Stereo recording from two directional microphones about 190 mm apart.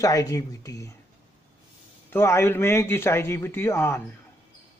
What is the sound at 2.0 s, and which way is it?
A man's voice, 15° left (ahead or behind).